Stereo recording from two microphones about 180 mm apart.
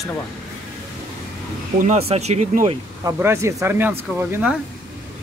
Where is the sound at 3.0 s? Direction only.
15° right (ahead or behind).